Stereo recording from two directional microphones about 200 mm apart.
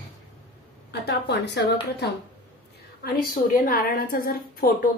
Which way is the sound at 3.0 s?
45° left (ahead or behind).